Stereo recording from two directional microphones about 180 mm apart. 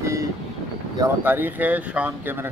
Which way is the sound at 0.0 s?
15° right (ahead or behind).